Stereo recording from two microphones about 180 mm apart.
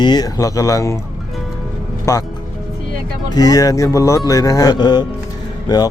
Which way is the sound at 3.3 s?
20° left (ahead or behind).